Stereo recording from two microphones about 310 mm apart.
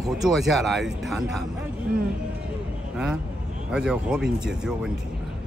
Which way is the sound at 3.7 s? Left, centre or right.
Centre.